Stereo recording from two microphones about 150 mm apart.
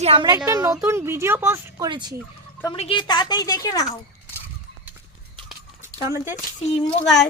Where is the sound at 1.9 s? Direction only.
30° right (ahead or behind).